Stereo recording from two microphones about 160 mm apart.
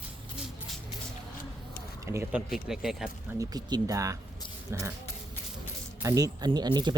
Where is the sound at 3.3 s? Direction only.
25° right (ahead or behind).